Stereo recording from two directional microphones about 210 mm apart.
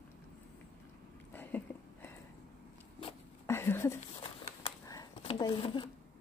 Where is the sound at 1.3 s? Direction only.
10° left (ahead or behind).